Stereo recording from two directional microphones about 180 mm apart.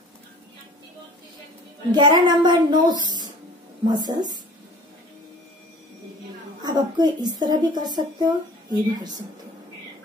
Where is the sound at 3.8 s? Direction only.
25° right (ahead or behind).